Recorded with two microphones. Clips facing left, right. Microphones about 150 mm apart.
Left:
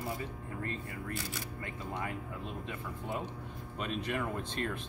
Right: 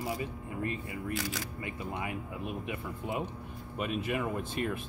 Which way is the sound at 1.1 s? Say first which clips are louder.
Right 6 dB; 90° right.